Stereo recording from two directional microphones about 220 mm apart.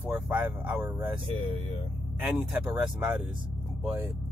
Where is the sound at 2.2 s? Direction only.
5° right (ahead or behind).